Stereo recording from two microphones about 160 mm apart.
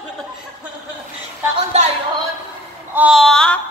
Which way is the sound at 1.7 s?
40° right (ahead or behind).